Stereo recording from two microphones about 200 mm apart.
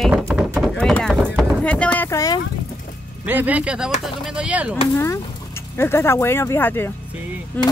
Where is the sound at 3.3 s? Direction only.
10° right (ahead or behind).